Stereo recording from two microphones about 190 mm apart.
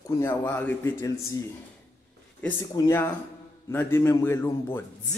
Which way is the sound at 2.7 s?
15° left (ahead or behind).